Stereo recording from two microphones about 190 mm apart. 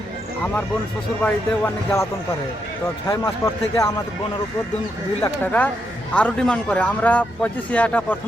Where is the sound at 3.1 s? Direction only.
20° left (ahead or behind).